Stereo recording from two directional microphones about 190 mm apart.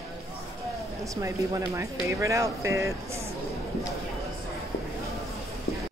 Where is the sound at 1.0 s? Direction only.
15° right (ahead or behind).